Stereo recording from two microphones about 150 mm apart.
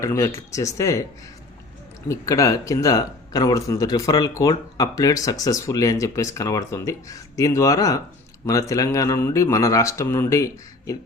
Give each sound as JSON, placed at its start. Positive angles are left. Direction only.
{"t": 0.0, "sound": "speech", "side_deg": 20}
{"t": 2.0, "sound": "speech", "side_deg": 20}